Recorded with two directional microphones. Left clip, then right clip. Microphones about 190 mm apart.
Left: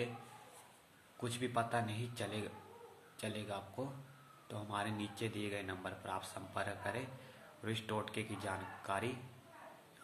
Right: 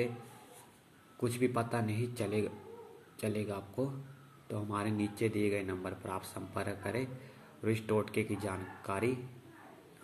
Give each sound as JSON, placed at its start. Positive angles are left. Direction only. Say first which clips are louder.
{"t": 1.2, "sound": "speech", "louder": "right 5 dB", "side_deg": -10}